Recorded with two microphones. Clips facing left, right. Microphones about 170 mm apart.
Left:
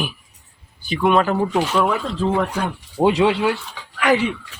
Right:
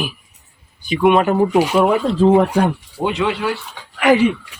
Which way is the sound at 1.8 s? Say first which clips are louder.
Right 7 dB; 25° right (ahead or behind).